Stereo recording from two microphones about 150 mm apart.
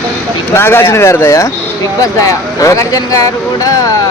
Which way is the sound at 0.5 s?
15° left (ahead or behind).